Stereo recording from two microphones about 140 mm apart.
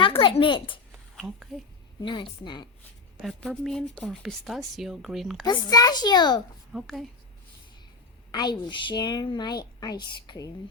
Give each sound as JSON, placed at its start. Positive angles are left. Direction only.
{"t": 0.0, "sound": "a sound", "side_deg": 35}
{"t": 1.1, "sound": "speech", "side_deg": 0}
{"t": 2.0, "sound": "a woman's voice", "side_deg": 35}
{"t": 3.2, "sound": "speech", "side_deg": 0}
{"t": 5.6, "sound": "a child's voice", "side_deg": 25}
{"t": 6.7, "sound": "speech", "side_deg": 0}
{"t": 8.3, "sound": "a woman's voice", "side_deg": 30}